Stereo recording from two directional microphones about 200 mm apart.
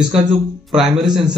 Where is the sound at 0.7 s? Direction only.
5° right (ahead or behind).